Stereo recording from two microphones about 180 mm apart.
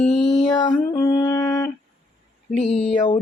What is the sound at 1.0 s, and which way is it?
Music, 20° left (ahead or behind).